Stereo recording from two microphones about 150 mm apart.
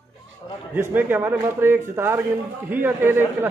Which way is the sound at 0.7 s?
15° right (ahead or behind).